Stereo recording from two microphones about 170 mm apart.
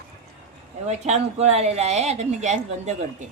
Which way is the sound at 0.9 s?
40° right (ahead or behind).